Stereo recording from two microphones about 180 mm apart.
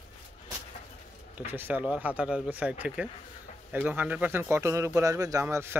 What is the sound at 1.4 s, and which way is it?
Speech, 10° right (ahead or behind).